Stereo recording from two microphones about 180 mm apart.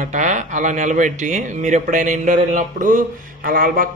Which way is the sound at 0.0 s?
45° right (ahead or behind).